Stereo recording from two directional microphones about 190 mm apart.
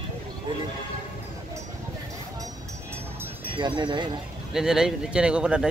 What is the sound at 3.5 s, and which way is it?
Speech, 25° right (ahead or behind).